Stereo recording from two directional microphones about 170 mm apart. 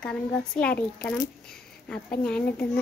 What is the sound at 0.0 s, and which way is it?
A child's voice, 5° left (ahead or behind).